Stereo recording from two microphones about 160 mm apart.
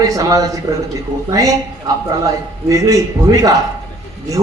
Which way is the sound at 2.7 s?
20° right (ahead or behind).